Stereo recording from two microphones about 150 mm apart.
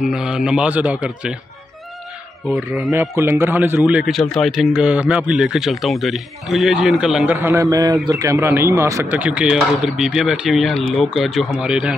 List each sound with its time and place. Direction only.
0.0 s speech: 5° right (ahead or behind)
2.5 s a man's voice: centre (ahead or behind)
2.9 s a man's voice: 15° right (ahead or behind)
7.3 s a man's voice: 20° right (ahead or behind)